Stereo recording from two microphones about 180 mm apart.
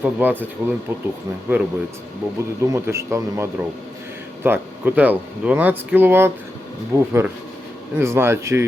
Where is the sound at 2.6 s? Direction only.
15° right (ahead or behind).